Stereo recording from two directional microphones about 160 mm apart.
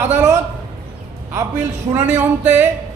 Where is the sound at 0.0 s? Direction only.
15° right (ahead or behind).